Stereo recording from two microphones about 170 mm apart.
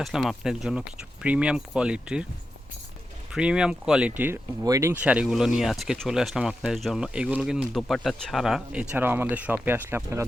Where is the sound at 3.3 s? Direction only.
5° right (ahead or behind).